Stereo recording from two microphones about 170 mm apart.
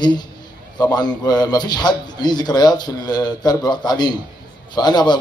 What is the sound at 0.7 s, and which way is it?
A man's voice, 25° left (ahead or behind).